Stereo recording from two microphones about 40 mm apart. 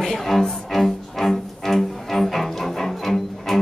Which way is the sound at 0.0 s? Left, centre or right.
Centre.